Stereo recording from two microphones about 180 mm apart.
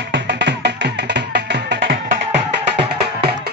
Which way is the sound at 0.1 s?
75° right (ahead or behind).